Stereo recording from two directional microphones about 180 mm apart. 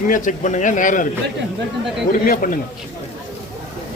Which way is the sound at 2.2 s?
50° left (ahead or behind).